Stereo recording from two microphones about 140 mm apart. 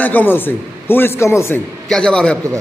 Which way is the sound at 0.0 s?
15° left (ahead or behind).